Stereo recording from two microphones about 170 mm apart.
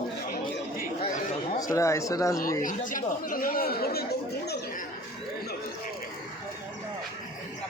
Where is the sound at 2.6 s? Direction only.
50° left (ahead or behind); by 4.5 s 70° left (ahead or behind).